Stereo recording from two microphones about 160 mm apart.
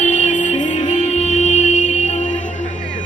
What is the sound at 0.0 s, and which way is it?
Music, 50° left (ahead or behind).